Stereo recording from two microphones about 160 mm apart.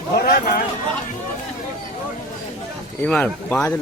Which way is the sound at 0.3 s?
65° left (ahead or behind).